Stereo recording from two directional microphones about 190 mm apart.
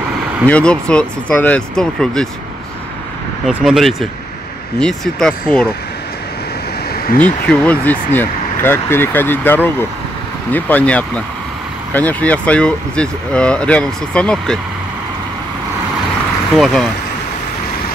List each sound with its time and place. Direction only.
0.5 s speech: 5° left (ahead or behind)
3.4 s speech: centre (ahead or behind)
7.2 s speech: 10° left (ahead or behind)
16.5 s speech: centre (ahead or behind)